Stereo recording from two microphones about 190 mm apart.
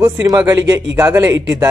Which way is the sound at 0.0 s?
20° right (ahead or behind).